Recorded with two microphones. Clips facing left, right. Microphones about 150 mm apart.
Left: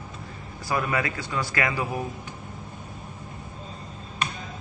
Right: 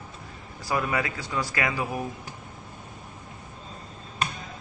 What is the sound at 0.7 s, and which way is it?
Speech, 15° right (ahead or behind).